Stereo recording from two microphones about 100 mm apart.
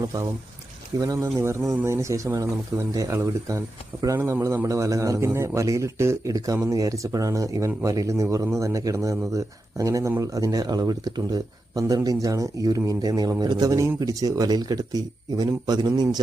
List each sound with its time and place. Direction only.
0.9 s speech: 30° right (ahead or behind)